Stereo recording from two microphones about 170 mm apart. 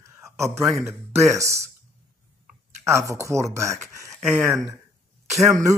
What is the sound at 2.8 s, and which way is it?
Speech, 15° right (ahead or behind).